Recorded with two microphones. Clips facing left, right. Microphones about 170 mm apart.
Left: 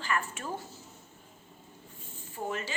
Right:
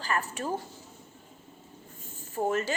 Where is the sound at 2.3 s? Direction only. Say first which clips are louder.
Right 7 dB; 45° right (ahead or behind).